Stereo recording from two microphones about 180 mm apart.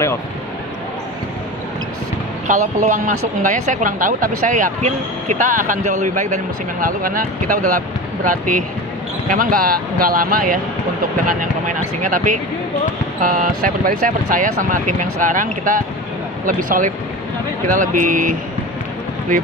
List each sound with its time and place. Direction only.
2.4 s speech: 45° right (ahead or behind)